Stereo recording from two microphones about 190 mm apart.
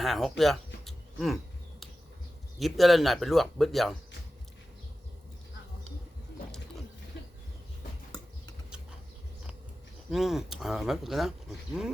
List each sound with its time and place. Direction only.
0.0 s a sound: centre (ahead or behind)
2.6 s speech: centre (ahead or behind)
10.1 s speech: centre (ahead or behind)